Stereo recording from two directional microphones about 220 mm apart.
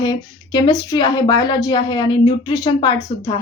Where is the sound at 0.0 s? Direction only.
20° left (ahead or behind).